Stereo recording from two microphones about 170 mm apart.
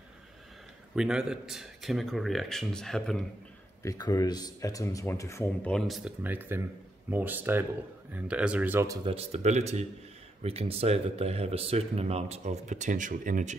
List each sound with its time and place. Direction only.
0.9 s speech: 5° right (ahead or behind)
3.8 s speech: 20° left (ahead or behind); by 6.1 s centre (ahead or behind)
6.2 s speech: 10° right (ahead or behind)
9.0 s speech: 35° right (ahead or behind)